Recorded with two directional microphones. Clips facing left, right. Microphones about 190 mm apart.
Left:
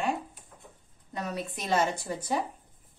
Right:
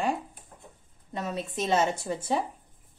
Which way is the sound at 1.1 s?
25° right (ahead or behind).